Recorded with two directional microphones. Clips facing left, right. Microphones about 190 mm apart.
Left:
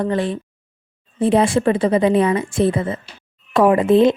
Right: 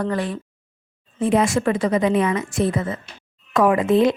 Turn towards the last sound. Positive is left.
turn(degrees=30)  # may be behind; listen again after turning